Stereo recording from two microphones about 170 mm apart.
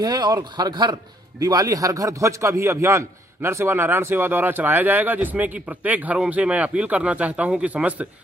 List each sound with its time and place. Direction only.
0.0 s a man's voice: 25° right (ahead or behind); by 8.1 s 10° right (ahead or behind)